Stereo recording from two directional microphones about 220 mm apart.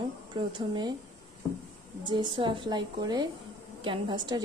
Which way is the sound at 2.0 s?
20° right (ahead or behind).